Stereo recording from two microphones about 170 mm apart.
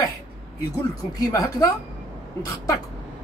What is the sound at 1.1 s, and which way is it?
Speech, 20° left (ahead or behind).